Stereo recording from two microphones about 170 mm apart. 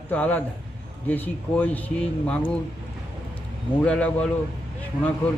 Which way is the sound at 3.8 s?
10° left (ahead or behind).